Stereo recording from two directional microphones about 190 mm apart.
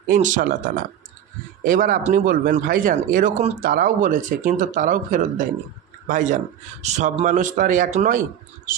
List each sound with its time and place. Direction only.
0.1 s a man's voice: 40° right (ahead or behind)